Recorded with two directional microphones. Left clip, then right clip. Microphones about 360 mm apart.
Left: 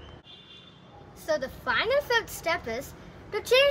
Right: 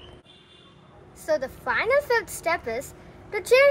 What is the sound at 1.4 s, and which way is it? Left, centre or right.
Speech, centre.